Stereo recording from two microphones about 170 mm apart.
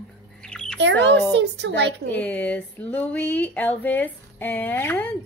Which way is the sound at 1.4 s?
90° right.